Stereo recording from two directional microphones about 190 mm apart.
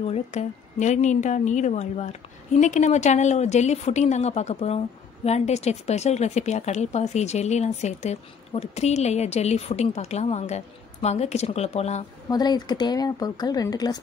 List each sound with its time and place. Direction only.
0.0 s speech: 35° left (ahead or behind)
12.3 s speech: 20° left (ahead or behind)